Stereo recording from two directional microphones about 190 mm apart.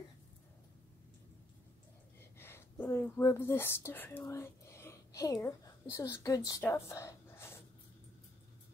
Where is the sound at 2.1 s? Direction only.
10° left (ahead or behind).